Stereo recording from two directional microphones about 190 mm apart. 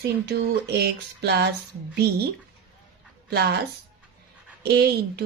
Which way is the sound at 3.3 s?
55° right (ahead or behind).